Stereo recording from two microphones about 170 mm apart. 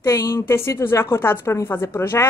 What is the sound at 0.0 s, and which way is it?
A woman's voice, 15° left (ahead or behind).